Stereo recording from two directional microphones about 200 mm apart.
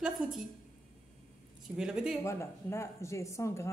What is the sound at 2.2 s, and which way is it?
Speech, 15° left (ahead or behind).